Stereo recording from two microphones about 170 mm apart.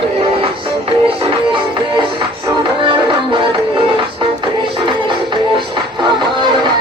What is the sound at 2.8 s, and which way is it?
Music, 30° right (ahead or behind).